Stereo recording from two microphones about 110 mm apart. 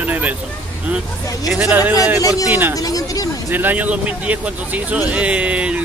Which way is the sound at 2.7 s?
35° left (ahead or behind).